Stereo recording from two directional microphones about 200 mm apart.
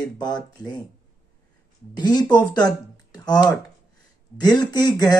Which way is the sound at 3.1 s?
20° left (ahead or behind).